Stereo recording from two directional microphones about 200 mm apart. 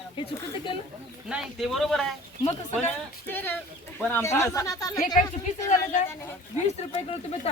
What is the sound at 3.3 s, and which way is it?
Speech, 10° left (ahead or behind).